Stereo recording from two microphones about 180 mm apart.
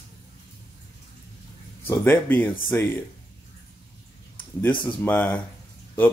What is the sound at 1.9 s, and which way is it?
Speech, 10° left (ahead or behind).